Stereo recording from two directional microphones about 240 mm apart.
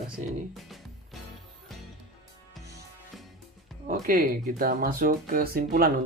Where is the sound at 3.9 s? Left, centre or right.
Right.